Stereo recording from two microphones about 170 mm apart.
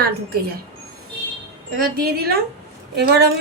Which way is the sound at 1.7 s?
60° right (ahead or behind).